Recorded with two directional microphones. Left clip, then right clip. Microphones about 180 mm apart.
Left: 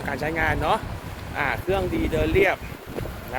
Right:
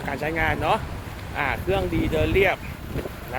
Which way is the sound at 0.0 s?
20° right (ahead or behind).